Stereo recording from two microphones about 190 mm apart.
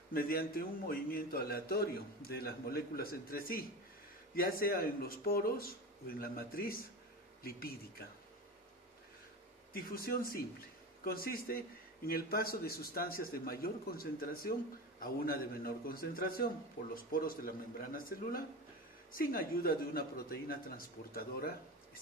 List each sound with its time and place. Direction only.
0.1 s a man's voice: 50° left (ahead or behind)
9.7 s a man's voice: 50° left (ahead or behind)